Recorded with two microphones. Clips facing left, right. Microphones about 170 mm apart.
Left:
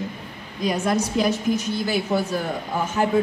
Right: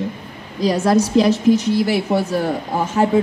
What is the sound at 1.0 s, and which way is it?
Speech, 90° right.